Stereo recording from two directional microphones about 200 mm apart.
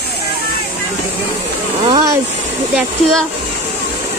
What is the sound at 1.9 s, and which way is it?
Speech, 20° right (ahead or behind).